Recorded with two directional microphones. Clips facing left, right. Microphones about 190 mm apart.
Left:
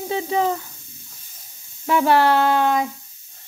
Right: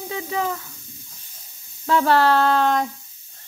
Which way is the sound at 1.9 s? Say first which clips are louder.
Left 1 dB; 15° left (ahead or behind).